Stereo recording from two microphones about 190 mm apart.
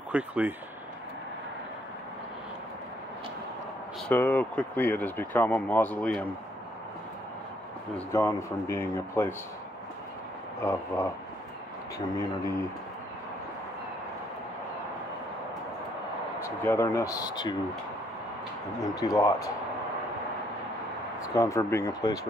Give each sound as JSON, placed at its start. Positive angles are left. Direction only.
{"t": 0.1, "sound": "speech", "side_deg": -10}
{"t": 4.1, "sound": "speech", "side_deg": 10}
{"t": 7.9, "sound": "speech", "side_deg": 15}
{"t": 10.6, "sound": "speech", "side_deg": 15}
{"t": 16.4, "sound": "speech", "side_deg": 15}
{"t": 18.8, "sound": "speech", "side_deg": 20}
{"t": 21.2, "sound": "speech", "side_deg": 15}